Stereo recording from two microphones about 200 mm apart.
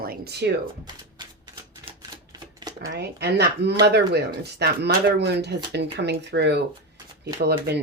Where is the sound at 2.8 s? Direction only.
60° right (ahead or behind).